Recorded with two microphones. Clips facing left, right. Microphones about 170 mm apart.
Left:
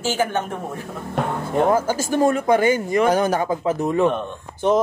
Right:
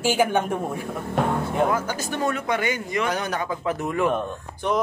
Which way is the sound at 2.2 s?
30° left (ahead or behind).